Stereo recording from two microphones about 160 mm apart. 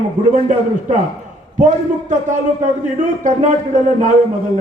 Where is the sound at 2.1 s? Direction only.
50° right (ahead or behind).